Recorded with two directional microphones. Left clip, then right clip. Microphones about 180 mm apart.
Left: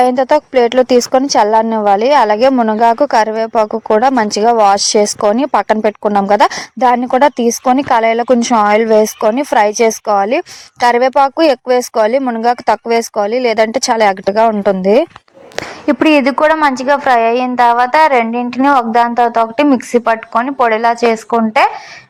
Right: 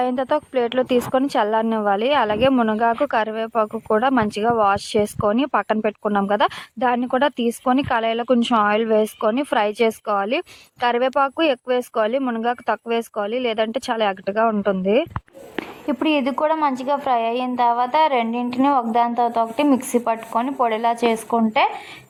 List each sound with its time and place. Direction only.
0.0 s a woman's voice: 40° left (ahead or behind)
16.0 s a woman's voice: 15° left (ahead or behind)